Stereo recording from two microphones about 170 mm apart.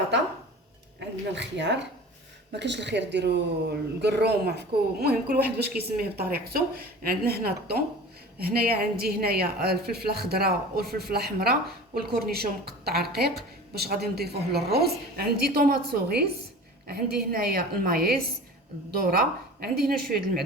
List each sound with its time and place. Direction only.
0.9 s a woman's voice: 90° right; by 20.4 s 65° right (ahead or behind)